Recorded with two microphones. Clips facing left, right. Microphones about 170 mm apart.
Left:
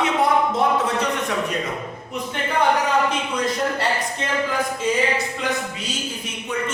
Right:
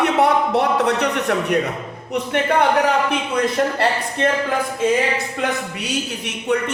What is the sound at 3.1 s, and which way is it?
A man's voice, 60° right (ahead or behind).